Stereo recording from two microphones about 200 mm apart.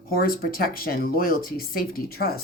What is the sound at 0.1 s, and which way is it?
Speech, 45° left (ahead or behind).